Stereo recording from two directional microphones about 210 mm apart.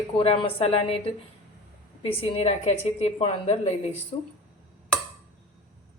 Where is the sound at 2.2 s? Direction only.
30° left (ahead or behind).